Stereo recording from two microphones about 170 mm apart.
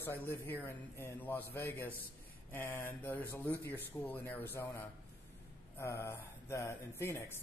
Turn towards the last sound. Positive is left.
turn(degrees=15)  # may be behind; listen again after turning